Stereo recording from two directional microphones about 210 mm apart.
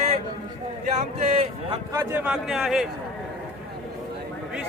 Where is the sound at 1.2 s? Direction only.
30° right (ahead or behind).